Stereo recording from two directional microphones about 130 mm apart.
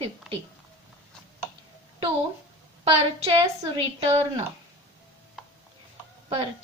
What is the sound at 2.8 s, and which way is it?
A woman's voice, 50° right (ahead or behind).